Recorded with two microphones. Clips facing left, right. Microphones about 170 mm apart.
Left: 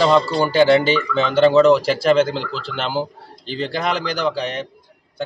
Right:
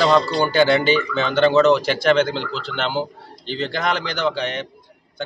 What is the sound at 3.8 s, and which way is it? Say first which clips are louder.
Speech: left 1 dB; 35° left (ahead or behind).